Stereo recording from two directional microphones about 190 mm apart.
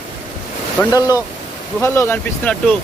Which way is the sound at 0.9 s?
20° left (ahead or behind).